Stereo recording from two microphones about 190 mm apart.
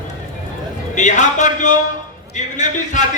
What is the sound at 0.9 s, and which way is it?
A man's voice, 40° left (ahead or behind).